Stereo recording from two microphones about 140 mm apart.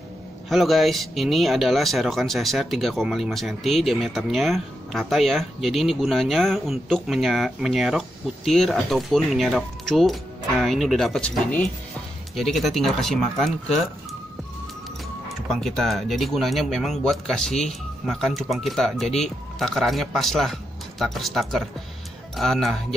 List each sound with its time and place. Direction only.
0.5 s speech: centre (ahead or behind)
15.2 s speech: centre (ahead or behind)